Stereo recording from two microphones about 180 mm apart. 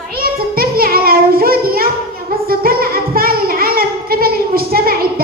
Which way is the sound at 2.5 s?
55° right (ahead or behind).